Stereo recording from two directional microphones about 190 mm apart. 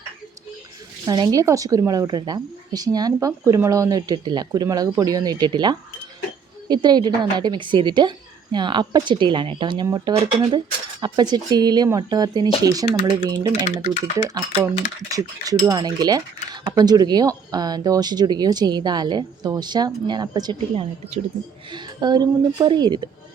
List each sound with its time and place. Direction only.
1.0 s speech: 20° right (ahead or behind)